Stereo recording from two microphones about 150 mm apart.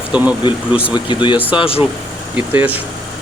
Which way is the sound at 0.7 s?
35° left (ahead or behind).